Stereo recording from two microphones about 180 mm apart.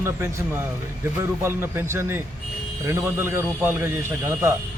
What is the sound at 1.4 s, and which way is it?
A man's voice, 15° right (ahead or behind).